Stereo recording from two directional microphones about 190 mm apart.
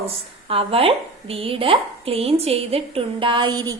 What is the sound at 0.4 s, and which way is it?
A woman's voice, 30° right (ahead or behind).